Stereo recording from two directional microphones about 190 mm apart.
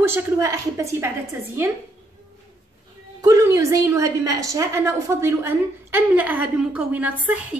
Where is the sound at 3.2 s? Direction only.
20° right (ahead or behind).